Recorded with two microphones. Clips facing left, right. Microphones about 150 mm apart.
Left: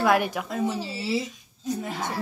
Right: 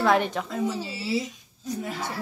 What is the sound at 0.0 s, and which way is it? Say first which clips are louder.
Speech: even; 10° left (ahead or behind).